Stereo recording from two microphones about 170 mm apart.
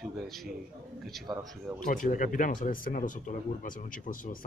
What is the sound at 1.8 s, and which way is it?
Speech, 50° left (ahead or behind).